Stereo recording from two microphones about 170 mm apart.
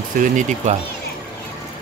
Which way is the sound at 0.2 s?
45° right (ahead or behind).